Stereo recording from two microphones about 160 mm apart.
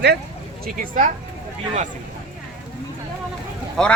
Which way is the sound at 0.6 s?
55° right (ahead or behind).